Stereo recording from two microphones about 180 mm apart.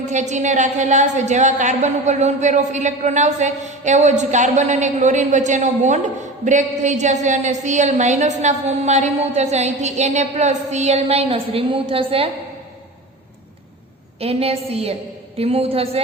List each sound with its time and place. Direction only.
0.1 s a woman's voice: 40° right (ahead or behind)
14.2 s a woman's voice: 35° right (ahead or behind)